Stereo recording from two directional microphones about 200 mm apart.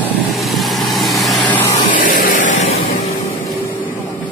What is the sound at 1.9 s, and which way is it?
Vehicle, 40° left (ahead or behind).